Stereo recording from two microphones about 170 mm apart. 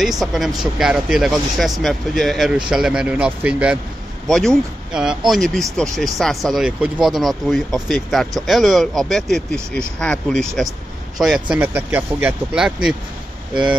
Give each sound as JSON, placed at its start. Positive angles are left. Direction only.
{"t": 0.0, "sound": "speech", "side_deg": 0}